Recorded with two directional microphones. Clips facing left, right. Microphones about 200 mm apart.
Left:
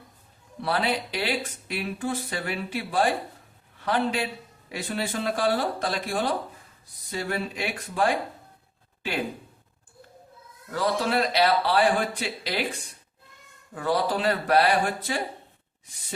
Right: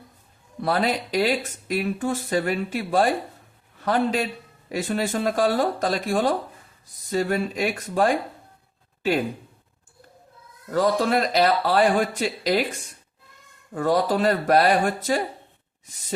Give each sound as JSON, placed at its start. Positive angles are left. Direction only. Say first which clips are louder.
{"t": 0.6, "sound": "a man's voice", "louder": "right 3 dB", "side_deg": -45}
{"t": 10.7, "sound": "speech", "louder": "right 5 dB", "side_deg": -45}
{"t": 13.7, "sound": "speech", "louder": "right 4 dB", "side_deg": -45}